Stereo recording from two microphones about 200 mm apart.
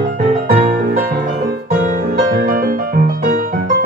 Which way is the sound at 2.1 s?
45° right (ahead or behind).